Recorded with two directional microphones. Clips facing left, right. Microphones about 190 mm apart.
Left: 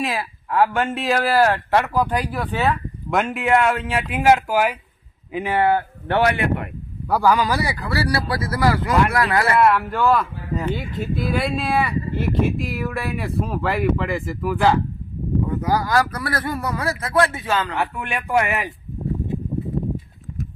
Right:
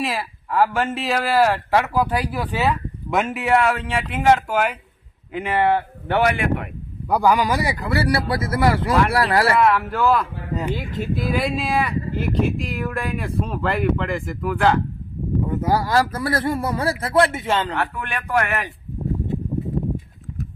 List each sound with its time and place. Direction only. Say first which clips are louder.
0.0 s speech: even; centre (ahead or behind)
7.1 s speech: even; 15° right (ahead or behind); by 9.5 s 35° right (ahead or behind)
9.5 s speech: left 1 dB; centre (ahead or behind)
15.4 s speech: right 2 dB; 25° right (ahead or behind)
17.7 s speech: left 1 dB; 15° left (ahead or behind)